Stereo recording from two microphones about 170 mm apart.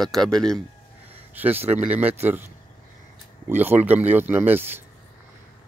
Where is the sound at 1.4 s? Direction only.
10° right (ahead or behind).